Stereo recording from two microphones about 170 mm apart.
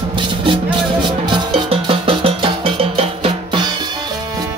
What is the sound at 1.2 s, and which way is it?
Music, 35° right (ahead or behind).